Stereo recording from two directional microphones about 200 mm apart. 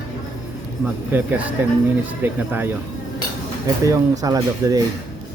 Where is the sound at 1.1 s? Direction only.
10° right (ahead or behind).